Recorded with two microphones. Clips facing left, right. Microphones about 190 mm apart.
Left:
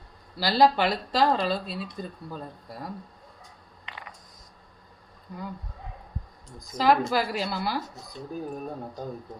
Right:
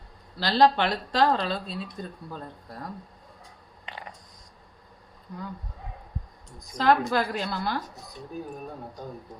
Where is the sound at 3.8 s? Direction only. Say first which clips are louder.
Right 3 dB; 30° right (ahead or behind).